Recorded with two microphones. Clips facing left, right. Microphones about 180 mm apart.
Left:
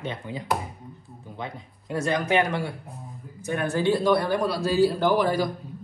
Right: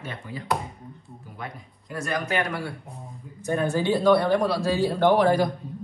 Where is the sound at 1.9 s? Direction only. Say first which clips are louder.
Left 4 dB; 25° left (ahead or behind).